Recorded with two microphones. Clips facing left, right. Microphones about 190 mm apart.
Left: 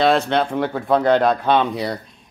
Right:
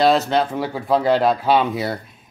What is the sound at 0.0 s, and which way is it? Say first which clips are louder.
Speech: even; 5° right (ahead or behind).